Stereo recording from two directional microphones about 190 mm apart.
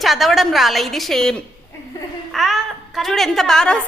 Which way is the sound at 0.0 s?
Centre (ahead or behind).